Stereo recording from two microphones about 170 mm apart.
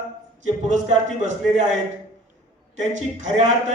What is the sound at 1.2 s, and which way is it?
Speech, 45° right (ahead or behind).